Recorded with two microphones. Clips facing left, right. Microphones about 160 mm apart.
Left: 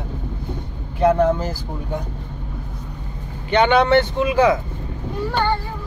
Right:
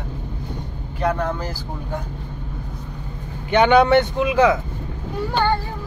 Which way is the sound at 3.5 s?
5° right (ahead or behind).